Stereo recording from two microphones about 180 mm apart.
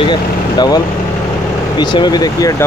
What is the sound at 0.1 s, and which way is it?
Speech, 25° left (ahead or behind).